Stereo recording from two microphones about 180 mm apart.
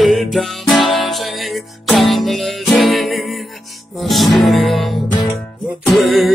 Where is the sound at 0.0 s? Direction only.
Centre (ahead or behind).